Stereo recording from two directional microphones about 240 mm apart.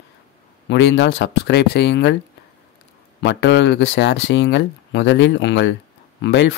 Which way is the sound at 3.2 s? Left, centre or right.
Left.